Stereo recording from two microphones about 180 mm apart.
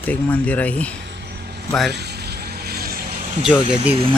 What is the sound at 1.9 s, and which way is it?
Vehicle, 65° right (ahead or behind).